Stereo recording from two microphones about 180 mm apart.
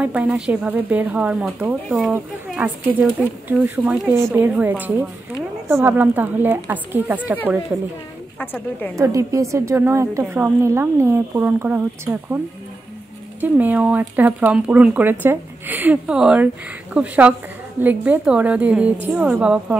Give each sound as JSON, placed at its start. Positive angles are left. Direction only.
{"t": 0.0, "sound": "a woman's voice", "side_deg": -10}
{"t": 8.4, "sound": "a woman's voice", "side_deg": 10}
{"t": 8.9, "sound": "a woman's voice", "side_deg": -15}
{"t": 13.4, "sound": "a woman's voice", "side_deg": -10}